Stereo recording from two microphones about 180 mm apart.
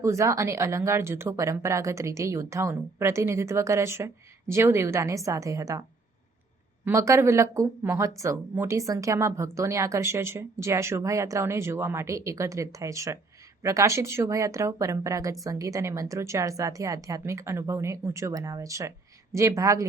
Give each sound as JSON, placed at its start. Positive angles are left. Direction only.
{"t": 0.0, "sound": "speech", "side_deg": -15}
{"t": 6.8, "sound": "speech", "side_deg": -15}